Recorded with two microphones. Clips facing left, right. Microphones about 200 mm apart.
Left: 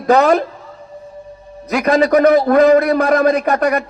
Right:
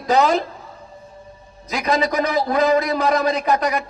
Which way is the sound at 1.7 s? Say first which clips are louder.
Left 7 dB; 60° left (ahead or behind).